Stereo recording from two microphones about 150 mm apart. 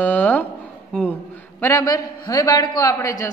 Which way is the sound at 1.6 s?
20° left (ahead or behind).